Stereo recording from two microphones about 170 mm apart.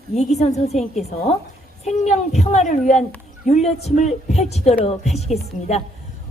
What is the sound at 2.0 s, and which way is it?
A woman's voice, 40° left (ahead or behind).